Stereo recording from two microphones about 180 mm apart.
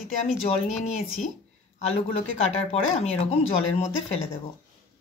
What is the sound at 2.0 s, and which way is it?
Speech, 40° left (ahead or behind).